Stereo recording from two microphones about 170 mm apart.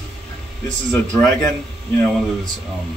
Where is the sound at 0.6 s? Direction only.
5° left (ahead or behind).